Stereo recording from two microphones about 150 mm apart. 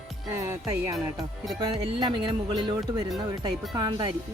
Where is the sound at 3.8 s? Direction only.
25° right (ahead or behind).